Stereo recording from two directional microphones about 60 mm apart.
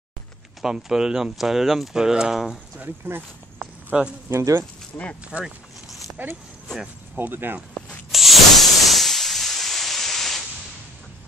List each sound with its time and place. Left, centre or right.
0.6 s speech: centre
2.8 s speech: right
4.3 s speech: right
5.4 s vehicle: centre
7.2 s speech: right
8.1 s hiss: centre